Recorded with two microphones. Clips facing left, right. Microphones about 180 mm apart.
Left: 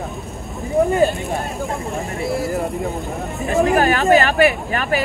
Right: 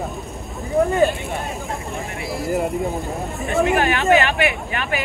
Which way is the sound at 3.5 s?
35° left (ahead or behind).